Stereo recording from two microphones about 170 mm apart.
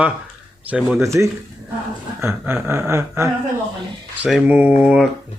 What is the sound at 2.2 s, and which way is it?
Speech, 15° right (ahead or behind).